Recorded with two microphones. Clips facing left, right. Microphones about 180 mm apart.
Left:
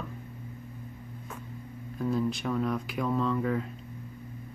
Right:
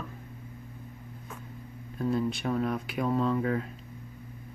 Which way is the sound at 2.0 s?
Centre (ahead or behind).